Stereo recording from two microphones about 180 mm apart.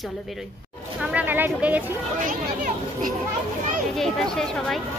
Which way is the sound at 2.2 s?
50° right (ahead or behind).